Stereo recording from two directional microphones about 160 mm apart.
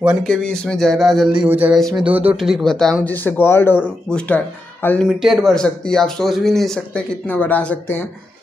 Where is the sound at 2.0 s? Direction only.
10° right (ahead or behind).